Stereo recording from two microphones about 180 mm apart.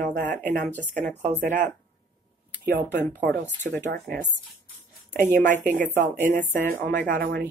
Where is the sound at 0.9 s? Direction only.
10° left (ahead or behind).